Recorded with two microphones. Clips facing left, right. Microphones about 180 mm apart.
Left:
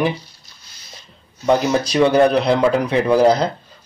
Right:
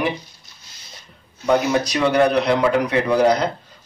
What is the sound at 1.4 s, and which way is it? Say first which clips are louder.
Speech: left 1 dB; 30° left (ahead or behind).